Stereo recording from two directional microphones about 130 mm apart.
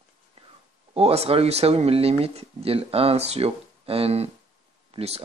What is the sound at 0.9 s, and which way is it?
Speech, 50° right (ahead or behind).